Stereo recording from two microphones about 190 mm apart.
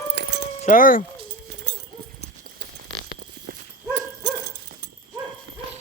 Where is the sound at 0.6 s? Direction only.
45° left (ahead or behind).